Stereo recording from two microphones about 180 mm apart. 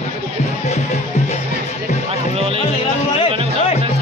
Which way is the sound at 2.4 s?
30° right (ahead or behind).